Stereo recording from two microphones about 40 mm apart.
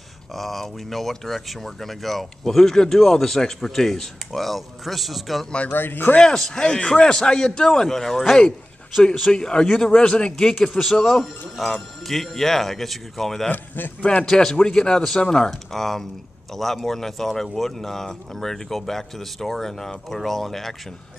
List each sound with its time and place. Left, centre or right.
0.3 s speech: centre
5.7 s speech: left
6.2 s speech: centre
10.5 s speech: centre
13.5 s a man's voice: left
14.2 s speech: centre